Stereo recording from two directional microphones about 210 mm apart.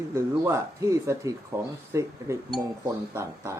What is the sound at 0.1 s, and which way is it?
Speech, 15° right (ahead or behind).